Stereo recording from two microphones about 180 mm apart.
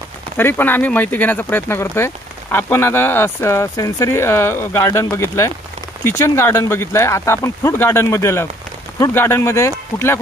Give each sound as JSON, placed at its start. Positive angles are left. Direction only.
{"t": 0.4, "sound": "speech", "side_deg": 10}